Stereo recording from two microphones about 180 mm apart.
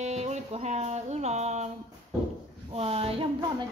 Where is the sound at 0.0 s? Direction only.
40° right (ahead or behind).